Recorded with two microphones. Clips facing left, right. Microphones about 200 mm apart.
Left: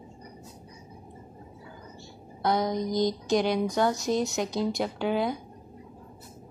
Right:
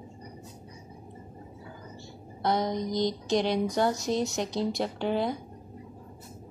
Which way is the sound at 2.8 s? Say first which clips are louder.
Left 2 dB; 50° left (ahead or behind).